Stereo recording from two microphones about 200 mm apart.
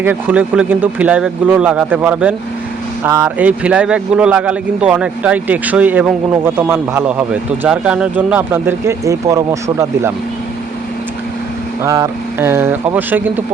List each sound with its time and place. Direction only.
0.0 s speech: 10° right (ahead or behind)
11.8 s speech: 15° right (ahead or behind)